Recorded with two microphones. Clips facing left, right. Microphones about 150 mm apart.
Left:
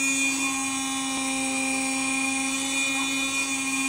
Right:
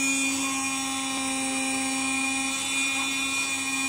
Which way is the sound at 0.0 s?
10° right (ahead or behind).